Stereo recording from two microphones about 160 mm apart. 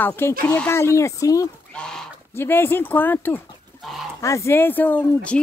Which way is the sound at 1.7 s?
5° left (ahead or behind).